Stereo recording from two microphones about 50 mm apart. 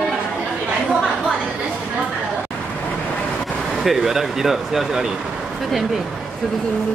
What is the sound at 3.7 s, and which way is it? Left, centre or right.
Speech, centre.